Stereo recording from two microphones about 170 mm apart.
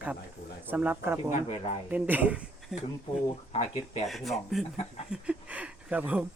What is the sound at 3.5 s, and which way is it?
Speech, 40° left (ahead or behind).